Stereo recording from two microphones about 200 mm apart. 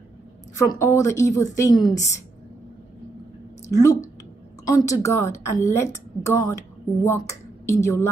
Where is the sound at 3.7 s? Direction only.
15° left (ahead or behind).